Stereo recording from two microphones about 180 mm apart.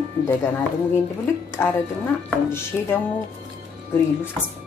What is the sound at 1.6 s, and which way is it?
Speech, 10° left (ahead or behind).